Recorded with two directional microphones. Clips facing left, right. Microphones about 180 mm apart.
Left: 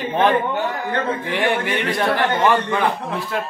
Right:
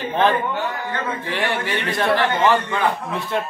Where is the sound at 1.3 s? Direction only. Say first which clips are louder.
Left 3 dB; 15° left (ahead or behind).